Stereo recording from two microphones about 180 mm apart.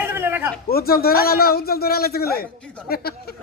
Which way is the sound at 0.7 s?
55° left (ahead or behind).